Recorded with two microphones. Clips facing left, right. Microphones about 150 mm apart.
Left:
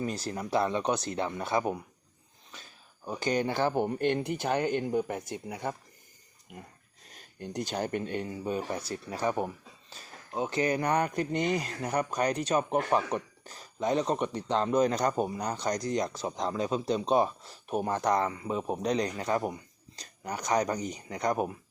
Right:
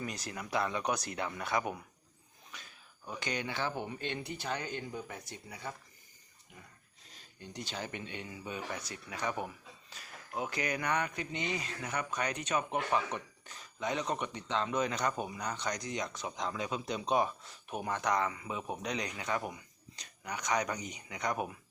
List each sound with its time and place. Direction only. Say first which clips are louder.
0.0 s speech: left 7 dB; 30° left (ahead or behind)
2.5 s a sound: left 2 dB; 30° left (ahead or behind)
3.1 s speech: left 9 dB; 35° left (ahead or behind)
7.1 s speech: left 10 dB; 55° left (ahead or behind); by 21.5 s 35° left (ahead or behind)